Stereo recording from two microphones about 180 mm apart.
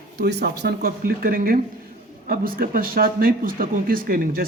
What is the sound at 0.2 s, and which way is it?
A man's voice, 65° right (ahead or behind).